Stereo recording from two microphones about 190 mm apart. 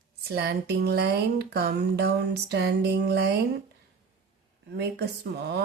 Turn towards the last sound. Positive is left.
turn(degrees=-60)  # may be behind; listen again after turning